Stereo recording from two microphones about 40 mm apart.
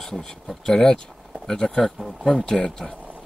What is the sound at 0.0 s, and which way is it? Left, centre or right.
Speech, centre.